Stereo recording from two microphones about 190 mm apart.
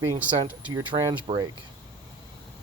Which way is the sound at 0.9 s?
25° right (ahead or behind).